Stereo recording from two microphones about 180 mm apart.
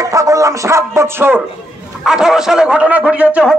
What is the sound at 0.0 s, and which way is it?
A man's voice, 20° right (ahead or behind).